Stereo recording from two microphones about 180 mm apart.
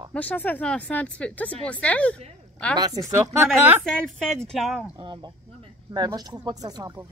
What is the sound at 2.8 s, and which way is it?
A woman's voice, 20° right (ahead or behind).